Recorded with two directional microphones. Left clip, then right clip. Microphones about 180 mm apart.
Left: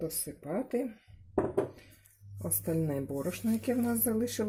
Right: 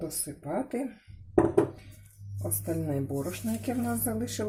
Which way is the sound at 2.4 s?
55° left (ahead or behind).